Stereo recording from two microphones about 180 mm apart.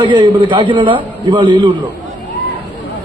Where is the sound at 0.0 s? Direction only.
25° right (ahead or behind).